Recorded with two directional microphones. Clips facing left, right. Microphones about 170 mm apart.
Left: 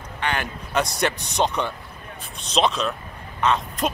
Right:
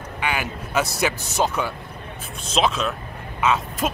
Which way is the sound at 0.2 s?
5° right (ahead or behind).